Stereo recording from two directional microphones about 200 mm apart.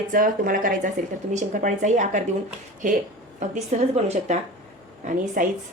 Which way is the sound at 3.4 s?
35° right (ahead or behind).